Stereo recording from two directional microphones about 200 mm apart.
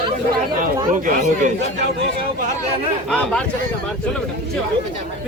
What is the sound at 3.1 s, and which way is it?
Speech, 5° left (ahead or behind).